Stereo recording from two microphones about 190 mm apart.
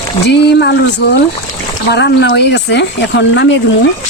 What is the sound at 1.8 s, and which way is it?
Speech, 65° left (ahead or behind).